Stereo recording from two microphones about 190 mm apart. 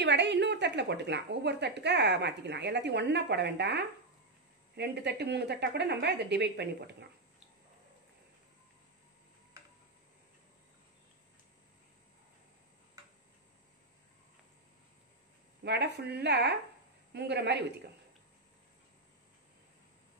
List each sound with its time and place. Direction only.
0.0 s a woman's voice: 65° right (ahead or behind)
15.6 s a woman's voice: 60° right (ahead or behind)